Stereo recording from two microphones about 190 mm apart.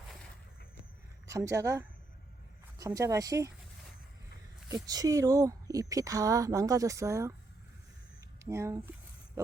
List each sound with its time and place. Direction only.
1.3 s speech: 15° right (ahead or behind)
4.7 s speech: 20° right (ahead or behind)
8.4 s speech: 15° right (ahead or behind)